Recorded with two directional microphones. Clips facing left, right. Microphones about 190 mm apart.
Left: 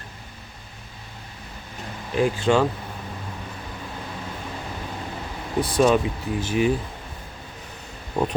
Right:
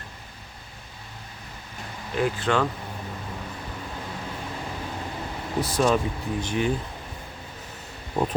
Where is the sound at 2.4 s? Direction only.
25° left (ahead or behind).